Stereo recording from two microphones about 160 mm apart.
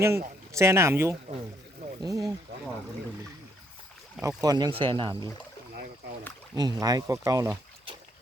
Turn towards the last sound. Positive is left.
turn(degrees=-20)  # may be behind; listen again after turning